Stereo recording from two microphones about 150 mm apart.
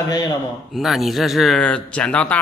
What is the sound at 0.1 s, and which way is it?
Speech, 25° left (ahead or behind).